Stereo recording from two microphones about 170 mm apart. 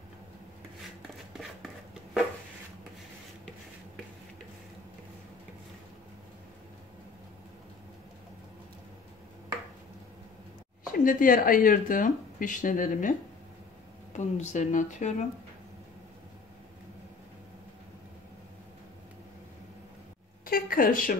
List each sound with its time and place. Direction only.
10.9 s speech: 55° left (ahead or behind)
14.1 s speech: 45° left (ahead or behind)
20.4 s a sound: 60° left (ahead or behind)